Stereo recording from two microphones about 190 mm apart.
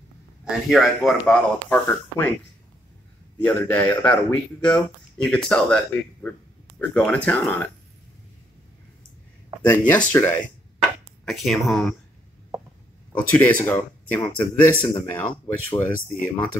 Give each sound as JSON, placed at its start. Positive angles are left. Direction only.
{"t": 0.5, "sound": "speech", "side_deg": 0}
{"t": 3.3, "sound": "a man's voice", "side_deg": 10}
{"t": 9.7, "sound": "a man's voice", "side_deg": 10}
{"t": 13.1, "sound": "a man's voice", "side_deg": 5}